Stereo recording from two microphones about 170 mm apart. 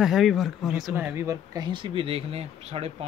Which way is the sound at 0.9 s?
15° right (ahead or behind).